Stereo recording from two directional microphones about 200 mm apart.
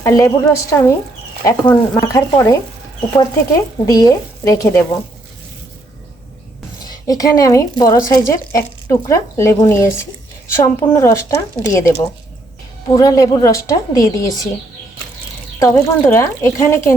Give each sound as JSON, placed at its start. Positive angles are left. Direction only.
{"t": 0.0, "sound": "a woman's voice", "side_deg": 15}
{"t": 6.8, "sound": "a woman's voice", "side_deg": 20}
{"t": 13.0, "sound": "a woman's voice", "side_deg": 15}
{"t": 15.5, "sound": "a woman's voice", "side_deg": 15}